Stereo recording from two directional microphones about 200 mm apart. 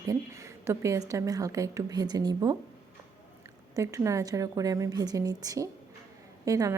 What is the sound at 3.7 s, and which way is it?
A woman's voice, 15° right (ahead or behind).